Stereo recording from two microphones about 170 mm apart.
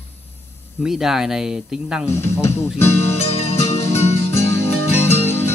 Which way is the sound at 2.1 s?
15° left (ahead or behind).